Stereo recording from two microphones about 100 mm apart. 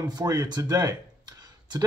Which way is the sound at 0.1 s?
40° right (ahead or behind).